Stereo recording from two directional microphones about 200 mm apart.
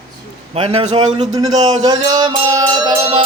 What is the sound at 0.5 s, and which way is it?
Speech, 30° right (ahead or behind).